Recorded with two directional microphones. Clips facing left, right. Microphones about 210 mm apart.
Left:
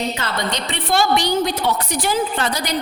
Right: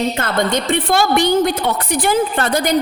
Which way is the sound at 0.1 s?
50° right (ahead or behind).